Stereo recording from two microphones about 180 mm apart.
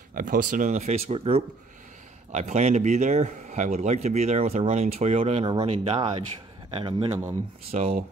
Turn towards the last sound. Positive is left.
turn(degrees=-40)  # may be behind; listen again after turning